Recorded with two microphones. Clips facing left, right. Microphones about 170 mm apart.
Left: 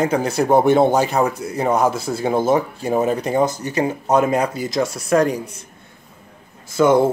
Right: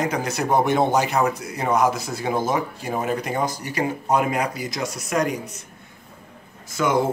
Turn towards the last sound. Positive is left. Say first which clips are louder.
# left 8 dB
turn(degrees=30)  # may be behind; listen again after turning